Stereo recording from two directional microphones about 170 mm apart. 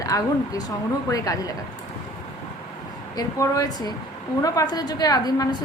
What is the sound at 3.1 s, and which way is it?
A woman's voice, 20° left (ahead or behind).